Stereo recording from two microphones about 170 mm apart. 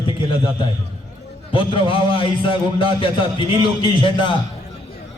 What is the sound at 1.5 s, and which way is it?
A man's voice, 30° left (ahead or behind).